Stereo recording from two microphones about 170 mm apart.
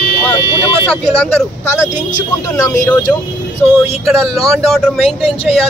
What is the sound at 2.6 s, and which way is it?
Speech, 20° left (ahead or behind).